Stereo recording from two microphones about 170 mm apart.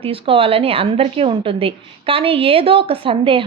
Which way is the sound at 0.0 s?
35° right (ahead or behind).